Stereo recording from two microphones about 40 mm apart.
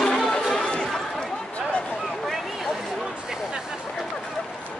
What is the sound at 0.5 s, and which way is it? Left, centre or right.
Chatter, centre.